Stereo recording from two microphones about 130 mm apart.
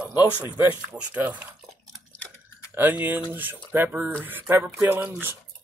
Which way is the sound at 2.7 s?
15° right (ahead or behind).